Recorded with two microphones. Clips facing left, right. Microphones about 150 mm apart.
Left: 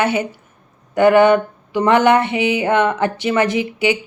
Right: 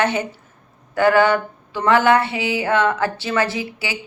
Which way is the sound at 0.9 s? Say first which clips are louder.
Left 4 dB; 20° left (ahead or behind).